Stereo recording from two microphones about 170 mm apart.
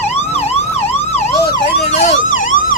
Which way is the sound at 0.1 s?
40° left (ahead or behind).